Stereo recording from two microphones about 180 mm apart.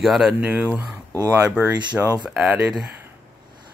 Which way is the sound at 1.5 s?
5° right (ahead or behind).